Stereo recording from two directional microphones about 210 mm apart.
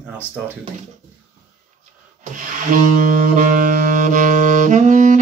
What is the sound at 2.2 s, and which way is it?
Saxophone, 40° right (ahead or behind).